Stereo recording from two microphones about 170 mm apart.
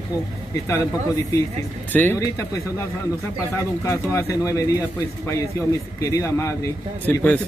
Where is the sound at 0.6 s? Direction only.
20° left (ahead or behind).